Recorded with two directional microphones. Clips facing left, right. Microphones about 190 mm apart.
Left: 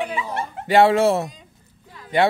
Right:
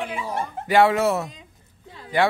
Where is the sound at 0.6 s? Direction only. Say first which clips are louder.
Left 3 dB; 30° left (ahead or behind).